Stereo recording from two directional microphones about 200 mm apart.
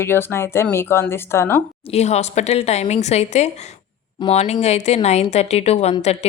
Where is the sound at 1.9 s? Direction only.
30° left (ahead or behind).